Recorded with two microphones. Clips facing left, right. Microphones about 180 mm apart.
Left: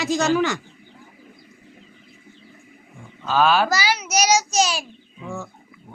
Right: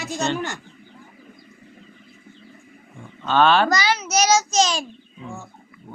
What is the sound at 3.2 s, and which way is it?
A child's voice, 5° left (ahead or behind).